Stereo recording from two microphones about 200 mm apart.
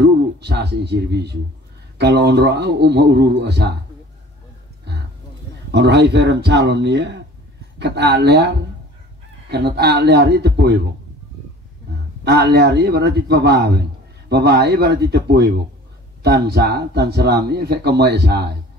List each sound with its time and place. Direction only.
0.0 s a man's voice: 55° right (ahead or behind)
5.7 s a man's voice: 60° right (ahead or behind)
12.3 s a man's voice: 55° right (ahead or behind)